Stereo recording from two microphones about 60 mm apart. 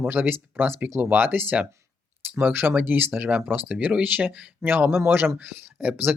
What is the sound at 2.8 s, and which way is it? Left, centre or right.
Speech, right.